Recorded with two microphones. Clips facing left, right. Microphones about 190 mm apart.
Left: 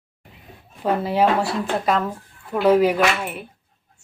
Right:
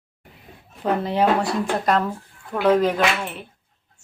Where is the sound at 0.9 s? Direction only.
5° left (ahead or behind).